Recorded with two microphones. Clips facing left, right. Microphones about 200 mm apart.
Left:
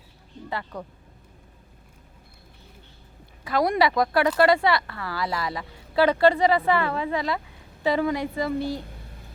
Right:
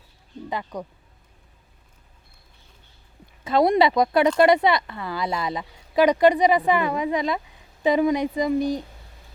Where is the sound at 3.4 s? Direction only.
25° right (ahead or behind).